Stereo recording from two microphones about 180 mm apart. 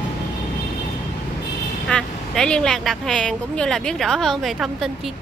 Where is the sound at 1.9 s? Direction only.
5° left (ahead or behind).